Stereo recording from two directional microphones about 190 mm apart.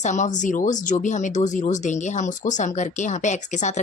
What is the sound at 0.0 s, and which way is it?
Speech, 40° left (ahead or behind).